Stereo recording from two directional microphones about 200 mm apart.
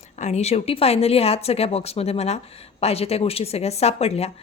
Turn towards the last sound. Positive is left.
turn(degrees=30)  # may be behind; listen again after turning